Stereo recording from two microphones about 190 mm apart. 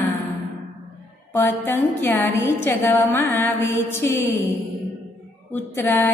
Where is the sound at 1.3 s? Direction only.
10° left (ahead or behind).